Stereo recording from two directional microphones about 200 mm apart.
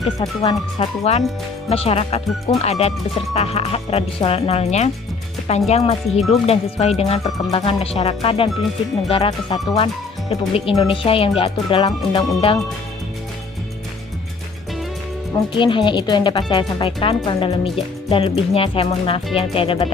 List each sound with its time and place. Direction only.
0.2 s speech: 20° left (ahead or behind)
1.1 s speech: 30° left (ahead or behind)
15.5 s speech: 25° left (ahead or behind)